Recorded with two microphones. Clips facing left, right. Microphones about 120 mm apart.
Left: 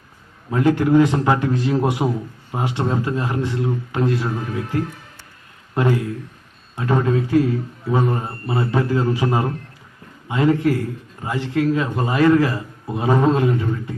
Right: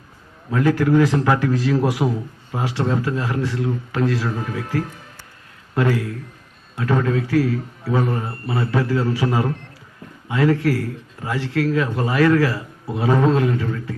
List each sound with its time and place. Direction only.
0.5 s a man's voice: 20° left (ahead or behind)